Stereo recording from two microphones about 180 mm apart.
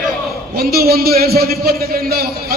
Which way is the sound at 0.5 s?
60° right (ahead or behind).